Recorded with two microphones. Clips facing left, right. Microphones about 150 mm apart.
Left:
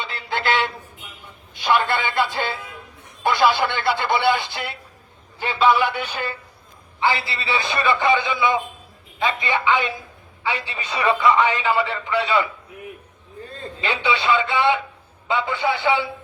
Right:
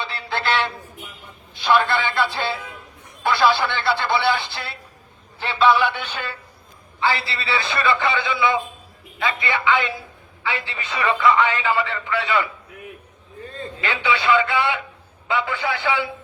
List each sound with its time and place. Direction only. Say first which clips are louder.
1.5 s a man's voice: right 1 dB; 15° left (ahead or behind)
13.8 s speech: even; 20° left (ahead or behind)